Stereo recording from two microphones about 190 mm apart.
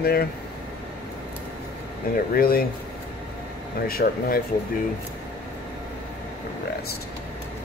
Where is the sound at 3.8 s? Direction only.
50° left (ahead or behind).